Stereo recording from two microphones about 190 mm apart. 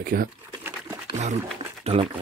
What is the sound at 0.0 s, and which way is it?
Speech, 50° right (ahead or behind).